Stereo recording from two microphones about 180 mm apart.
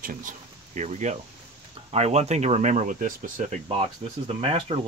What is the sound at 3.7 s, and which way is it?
Speech, 30° right (ahead or behind).